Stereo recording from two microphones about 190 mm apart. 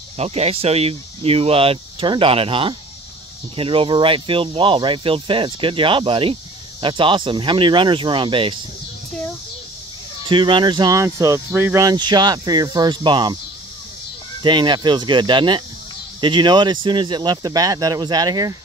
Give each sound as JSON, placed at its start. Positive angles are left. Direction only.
{"t": 0.2, "sound": "speech", "side_deg": -35}
{"t": 10.2, "sound": "speech", "side_deg": -25}
{"t": 14.4, "sound": "speech", "side_deg": -25}